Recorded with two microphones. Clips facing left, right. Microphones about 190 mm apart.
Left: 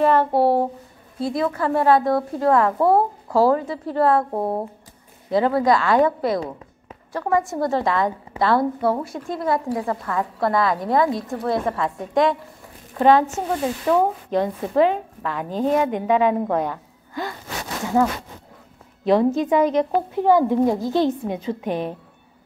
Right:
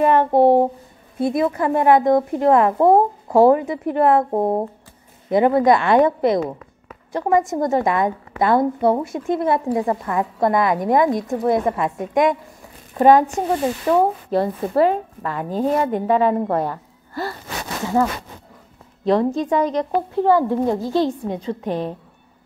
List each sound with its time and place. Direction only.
0.0 s a woman's voice: 15° right (ahead or behind)
19.0 s speech: 5° left (ahead or behind)
19.6 s speech: 20° left (ahead or behind)